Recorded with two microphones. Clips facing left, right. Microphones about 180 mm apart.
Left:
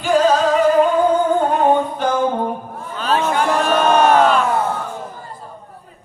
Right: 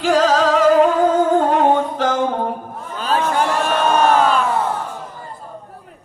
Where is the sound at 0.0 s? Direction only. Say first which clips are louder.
Even; 90° right.